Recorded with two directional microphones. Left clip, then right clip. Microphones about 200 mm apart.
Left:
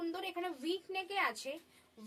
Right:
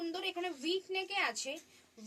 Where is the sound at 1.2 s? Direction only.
25° left (ahead or behind).